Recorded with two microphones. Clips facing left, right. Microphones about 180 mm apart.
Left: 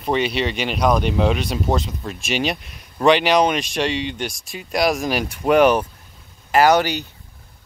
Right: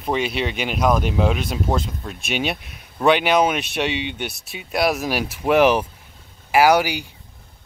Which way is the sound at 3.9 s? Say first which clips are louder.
Left 2 dB; 60° right (ahead or behind).